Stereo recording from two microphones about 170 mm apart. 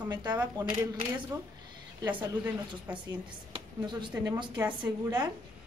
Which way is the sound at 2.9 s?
10° right (ahead or behind).